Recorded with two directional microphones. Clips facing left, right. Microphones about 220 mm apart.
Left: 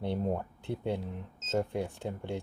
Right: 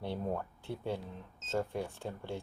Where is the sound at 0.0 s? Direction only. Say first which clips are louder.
Left 4 dB; 20° left (ahead or behind).